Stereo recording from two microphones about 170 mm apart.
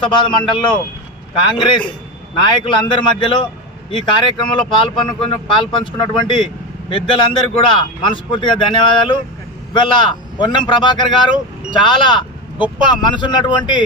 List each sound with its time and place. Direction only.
0.0 s a man's voice: 30° left (ahead or behind)